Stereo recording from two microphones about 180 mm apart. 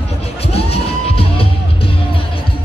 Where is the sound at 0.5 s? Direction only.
30° left (ahead or behind).